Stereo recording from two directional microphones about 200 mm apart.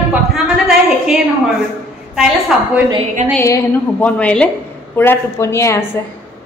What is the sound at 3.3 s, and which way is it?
A woman's voice, 10° left (ahead or behind).